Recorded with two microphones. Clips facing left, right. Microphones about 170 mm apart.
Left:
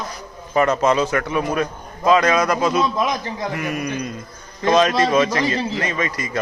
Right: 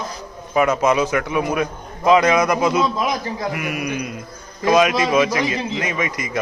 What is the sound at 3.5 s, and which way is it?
Speech, 10° right (ahead or behind).